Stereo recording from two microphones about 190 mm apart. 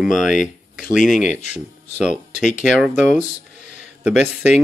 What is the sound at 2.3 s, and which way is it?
Speech, 40° left (ahead or behind).